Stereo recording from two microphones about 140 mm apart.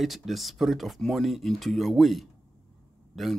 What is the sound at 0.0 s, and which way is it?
Speech, centre (ahead or behind).